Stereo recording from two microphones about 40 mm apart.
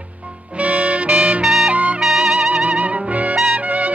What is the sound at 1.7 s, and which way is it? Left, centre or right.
Music, right.